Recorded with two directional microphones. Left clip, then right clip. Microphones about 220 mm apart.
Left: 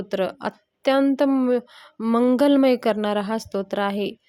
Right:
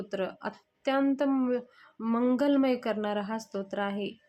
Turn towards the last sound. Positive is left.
turn(degrees=40)  # may be behind; listen again after turning